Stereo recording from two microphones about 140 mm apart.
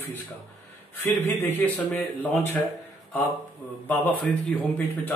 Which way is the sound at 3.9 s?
15° left (ahead or behind).